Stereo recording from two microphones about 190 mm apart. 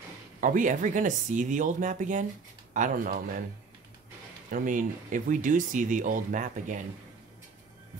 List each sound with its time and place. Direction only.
0.4 s speech: 45° right (ahead or behind)
4.5 s speech: 45° right (ahead or behind)